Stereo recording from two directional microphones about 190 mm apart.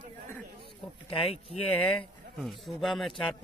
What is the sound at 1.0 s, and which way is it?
Speech, 30° left (ahead or behind).